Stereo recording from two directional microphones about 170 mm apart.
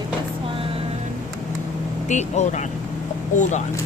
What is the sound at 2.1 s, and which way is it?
Speech, 45° left (ahead or behind).